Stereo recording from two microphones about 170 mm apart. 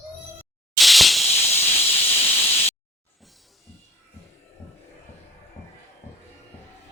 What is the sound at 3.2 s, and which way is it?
Music, centre (ahead or behind).